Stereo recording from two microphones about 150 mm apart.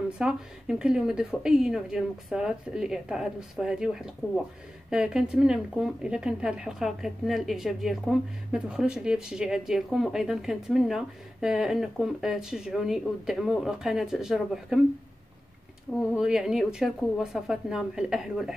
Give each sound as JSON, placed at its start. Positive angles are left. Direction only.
{"t": 0.2, "sound": "a woman's voice", "side_deg": -5}
{"t": 16.2, "sound": "a woman's voice", "side_deg": -5}